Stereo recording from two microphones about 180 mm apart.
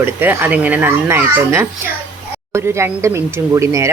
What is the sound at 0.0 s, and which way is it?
Speech, 10° right (ahead or behind).